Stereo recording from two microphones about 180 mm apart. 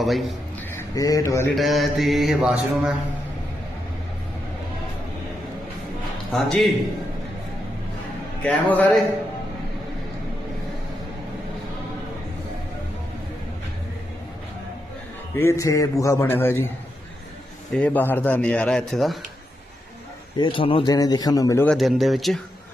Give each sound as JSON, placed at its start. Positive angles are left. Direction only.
{"t": 0.0, "sound": "mantra", "side_deg": 0}
{"t": 0.7, "sound": "speech", "side_deg": 15}
{"t": 1.5, "sound": "mantra", "side_deg": 0}
{"t": 6.3, "sound": "mantra", "side_deg": 0}
{"t": 8.4, "sound": "a man's voice", "side_deg": 10}
{"t": 15.4, "sound": "a man's voice", "side_deg": 15}
{"t": 17.7, "sound": "a man's voice", "side_deg": 5}
{"t": 20.4, "sound": "speech", "side_deg": 30}
{"t": 21.7, "sound": "mantra", "side_deg": 0}